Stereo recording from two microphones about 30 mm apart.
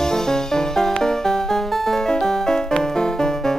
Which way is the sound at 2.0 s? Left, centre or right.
Centre.